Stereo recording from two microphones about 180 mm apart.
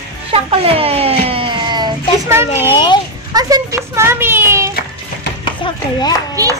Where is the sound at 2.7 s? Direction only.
25° left (ahead or behind).